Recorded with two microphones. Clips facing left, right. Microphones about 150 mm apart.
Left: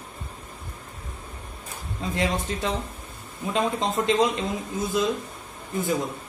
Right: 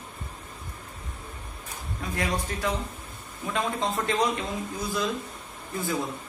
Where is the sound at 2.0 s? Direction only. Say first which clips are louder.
Left 3 dB; 25° left (ahead or behind).